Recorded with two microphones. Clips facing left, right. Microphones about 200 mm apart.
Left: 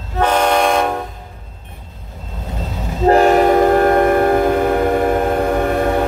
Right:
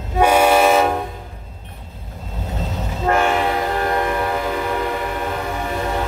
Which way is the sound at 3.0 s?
35° left (ahead or behind).